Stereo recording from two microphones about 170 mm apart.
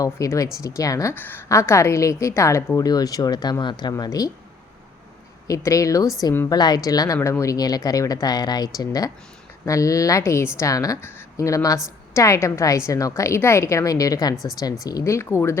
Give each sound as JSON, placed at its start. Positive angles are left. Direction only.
{"t": 0.0, "sound": "a woman's voice", "side_deg": 20}
{"t": 5.5, "sound": "a woman's voice", "side_deg": 20}